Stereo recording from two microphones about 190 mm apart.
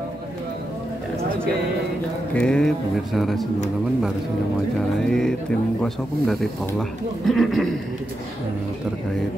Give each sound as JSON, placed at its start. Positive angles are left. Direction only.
{"t": 2.3, "sound": "speech", "side_deg": 5}
{"t": 4.7, "sound": "speech", "side_deg": 5}